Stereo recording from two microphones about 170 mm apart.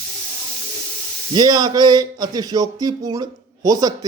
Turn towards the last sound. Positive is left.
turn(degrees=-25)  # may be behind; listen again after turning